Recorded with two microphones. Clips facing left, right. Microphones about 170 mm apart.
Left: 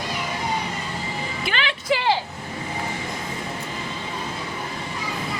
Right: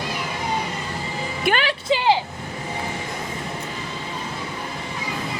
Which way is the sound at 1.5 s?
45° right (ahead or behind).